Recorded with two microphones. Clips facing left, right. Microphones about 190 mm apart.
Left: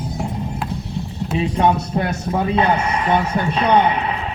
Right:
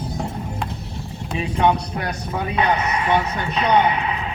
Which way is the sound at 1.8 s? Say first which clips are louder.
Left 5 dB; 25° left (ahead or behind).